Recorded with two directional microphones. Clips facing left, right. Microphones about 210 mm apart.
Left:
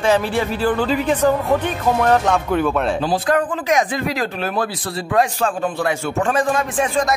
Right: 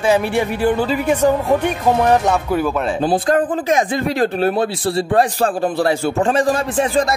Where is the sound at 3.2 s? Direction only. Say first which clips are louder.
Right 2 dB; 30° right (ahead or behind).